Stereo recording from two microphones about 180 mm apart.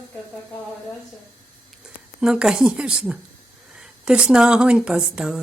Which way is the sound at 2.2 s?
5° right (ahead or behind).